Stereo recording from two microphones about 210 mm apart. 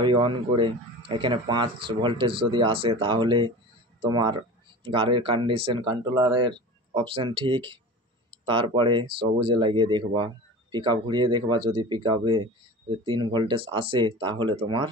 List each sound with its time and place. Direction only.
0.0 s speech: 25° right (ahead or behind)